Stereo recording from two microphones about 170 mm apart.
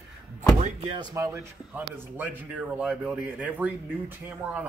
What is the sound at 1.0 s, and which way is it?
A man's voice, 20° right (ahead or behind).